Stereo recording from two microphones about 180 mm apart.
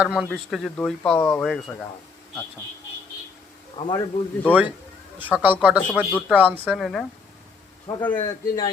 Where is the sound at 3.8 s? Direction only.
25° left (ahead or behind).